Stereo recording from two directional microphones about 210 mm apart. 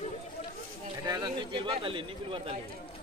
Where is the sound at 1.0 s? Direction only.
20° right (ahead or behind).